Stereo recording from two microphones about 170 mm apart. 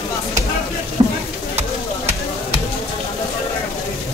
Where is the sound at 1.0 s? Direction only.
25° right (ahead or behind).